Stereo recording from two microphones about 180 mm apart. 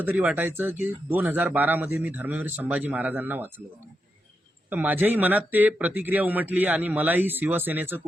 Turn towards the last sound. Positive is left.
turn(degrees=-10)  # may be behind; listen again after turning